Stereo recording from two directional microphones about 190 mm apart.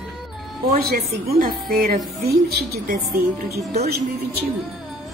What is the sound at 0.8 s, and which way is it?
A woman's voice, 55° right (ahead or behind).